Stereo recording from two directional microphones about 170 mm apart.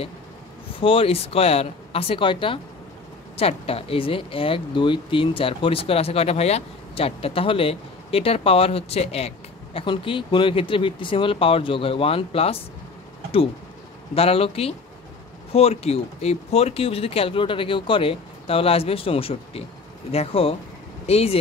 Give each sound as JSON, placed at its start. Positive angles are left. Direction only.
{"t": 0.7, "sound": "speech", "side_deg": 35}
{"t": 14.1, "sound": "speech", "side_deg": 35}